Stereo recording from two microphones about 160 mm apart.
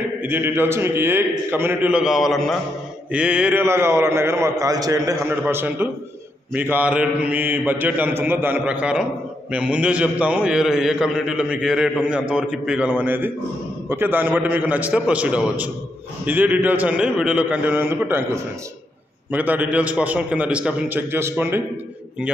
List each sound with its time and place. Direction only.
0.2 s a man's voice: 15° right (ahead or behind)